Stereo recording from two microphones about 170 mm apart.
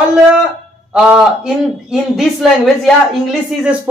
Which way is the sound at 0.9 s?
5° right (ahead or behind).